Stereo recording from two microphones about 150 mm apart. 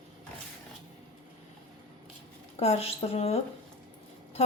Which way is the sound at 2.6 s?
45° left (ahead or behind).